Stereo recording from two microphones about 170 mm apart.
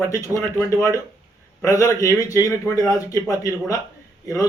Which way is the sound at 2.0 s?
20° left (ahead or behind).